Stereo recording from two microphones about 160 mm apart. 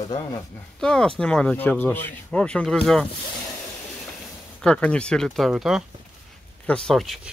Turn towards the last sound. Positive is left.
turn(degrees=0)  # may be behind; listen again after turning